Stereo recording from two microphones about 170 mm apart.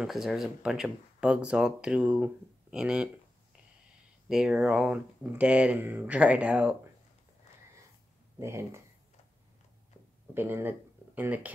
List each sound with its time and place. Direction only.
0.0 s speech: centre (ahead or behind)
4.3 s speech: 5° right (ahead or behind)
8.4 s speech: 15° right (ahead or behind)
10.3 s speech: 10° right (ahead or behind)